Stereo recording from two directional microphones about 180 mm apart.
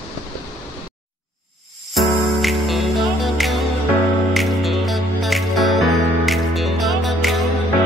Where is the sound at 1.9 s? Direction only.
Centre (ahead or behind).